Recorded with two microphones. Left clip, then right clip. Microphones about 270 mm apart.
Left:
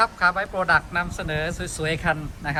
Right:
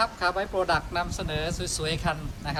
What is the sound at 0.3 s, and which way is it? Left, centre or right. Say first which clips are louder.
Speech: left 2 dB; left.